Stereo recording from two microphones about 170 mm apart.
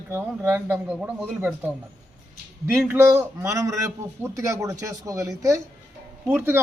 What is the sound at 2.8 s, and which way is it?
A man's voice, 10° right (ahead or behind).